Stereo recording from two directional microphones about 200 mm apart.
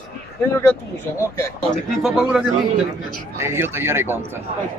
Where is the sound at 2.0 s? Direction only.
5° right (ahead or behind).